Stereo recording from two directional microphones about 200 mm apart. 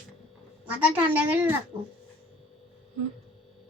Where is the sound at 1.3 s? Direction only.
10° right (ahead or behind).